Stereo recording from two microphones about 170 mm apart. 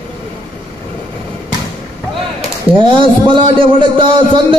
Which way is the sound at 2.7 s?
30° right (ahead or behind).